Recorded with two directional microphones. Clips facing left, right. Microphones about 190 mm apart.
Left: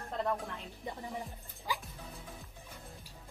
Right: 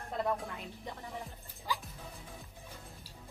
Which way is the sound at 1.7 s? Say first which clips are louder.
Even; 15° left (ahead or behind).